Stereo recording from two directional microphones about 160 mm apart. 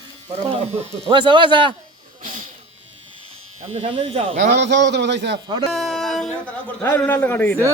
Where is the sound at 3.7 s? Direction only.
40° right (ahead or behind).